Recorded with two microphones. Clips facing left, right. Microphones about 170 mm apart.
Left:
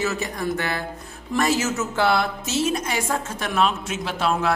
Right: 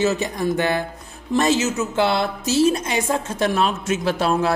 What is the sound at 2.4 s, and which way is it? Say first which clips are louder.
Speech: right 6 dB; 35° right (ahead or behind).